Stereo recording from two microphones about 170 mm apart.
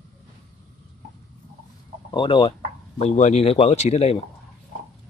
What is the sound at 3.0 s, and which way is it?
Speech, 40° left (ahead or behind).